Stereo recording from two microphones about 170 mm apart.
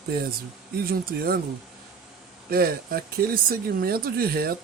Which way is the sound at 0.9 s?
60° right (ahead or behind).